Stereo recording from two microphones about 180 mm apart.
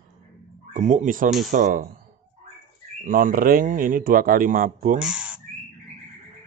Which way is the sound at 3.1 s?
50° right (ahead or behind).